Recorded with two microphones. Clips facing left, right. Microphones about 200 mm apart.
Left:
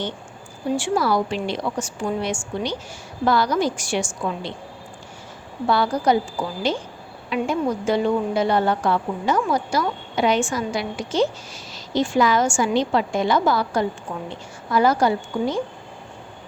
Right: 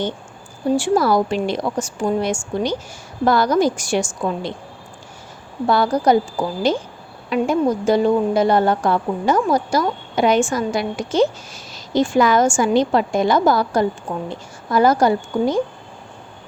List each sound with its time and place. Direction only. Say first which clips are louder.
0.8 s a woman's voice: right 4 dB; 45° right (ahead or behind)
5.6 s a woman's voice: right 3 dB; 45° right (ahead or behind)